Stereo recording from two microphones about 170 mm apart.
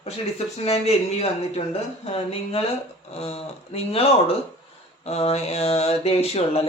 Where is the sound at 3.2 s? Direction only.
35° left (ahead or behind).